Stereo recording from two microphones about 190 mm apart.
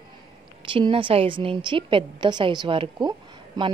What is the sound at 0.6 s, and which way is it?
A woman's voice, 25° right (ahead or behind).